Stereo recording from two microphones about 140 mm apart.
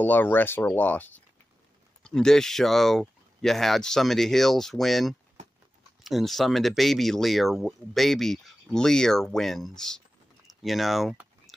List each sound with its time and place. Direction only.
0.0 s speech: 15° left (ahead or behind)